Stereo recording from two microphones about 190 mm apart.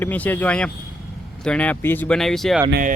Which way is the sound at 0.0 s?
10° left (ahead or behind).